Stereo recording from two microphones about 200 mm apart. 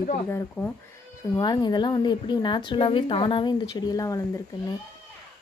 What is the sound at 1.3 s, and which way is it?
A woman's voice, 20° left (ahead or behind).